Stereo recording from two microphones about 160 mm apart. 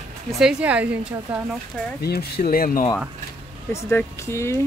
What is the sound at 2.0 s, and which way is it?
Speech, 75° left (ahead or behind).